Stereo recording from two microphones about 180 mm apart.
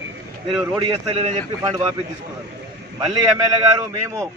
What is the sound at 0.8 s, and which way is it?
Speech, 35° right (ahead or behind).